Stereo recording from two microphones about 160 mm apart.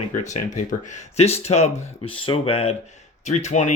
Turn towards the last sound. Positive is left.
turn(degrees=45)  # may be behind; listen again after turning